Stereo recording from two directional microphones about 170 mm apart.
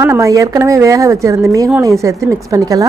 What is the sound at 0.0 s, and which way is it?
Speech, 15° right (ahead or behind).